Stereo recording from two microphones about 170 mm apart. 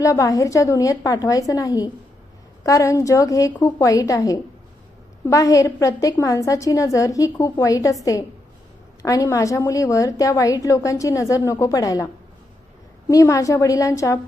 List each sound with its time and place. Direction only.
0.0 s a woman's voice: 20° left (ahead or behind)
9.0 s a woman's voice: 20° left (ahead or behind)
13.1 s a woman's voice: 20° left (ahead or behind)